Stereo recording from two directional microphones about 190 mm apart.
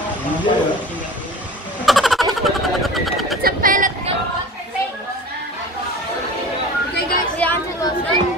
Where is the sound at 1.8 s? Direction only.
Centre (ahead or behind).